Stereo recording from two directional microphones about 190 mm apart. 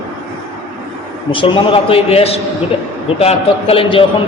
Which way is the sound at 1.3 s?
25° left (ahead or behind).